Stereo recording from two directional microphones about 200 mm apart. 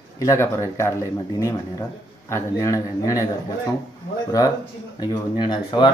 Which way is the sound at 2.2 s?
15° left (ahead or behind).